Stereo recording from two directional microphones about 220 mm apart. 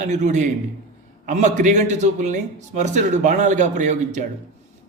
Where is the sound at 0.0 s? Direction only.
35° right (ahead or behind).